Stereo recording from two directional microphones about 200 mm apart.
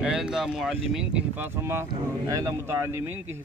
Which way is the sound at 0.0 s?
5° right (ahead or behind).